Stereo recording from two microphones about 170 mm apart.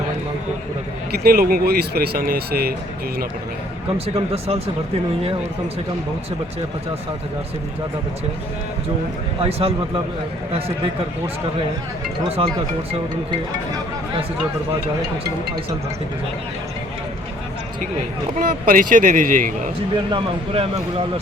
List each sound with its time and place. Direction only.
1.1 s speech: 65° right (ahead or behind)
3.9 s speech: 35° right (ahead or behind)
9.4 s speech: 35° right (ahead or behind)
18.3 s speech: 55° right (ahead or behind)
20.1 s speech: 30° right (ahead or behind)